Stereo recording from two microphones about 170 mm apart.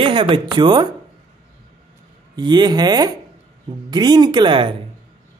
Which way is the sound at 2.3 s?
25° right (ahead or behind).